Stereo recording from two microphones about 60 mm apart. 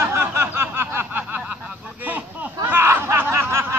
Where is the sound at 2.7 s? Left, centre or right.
Right.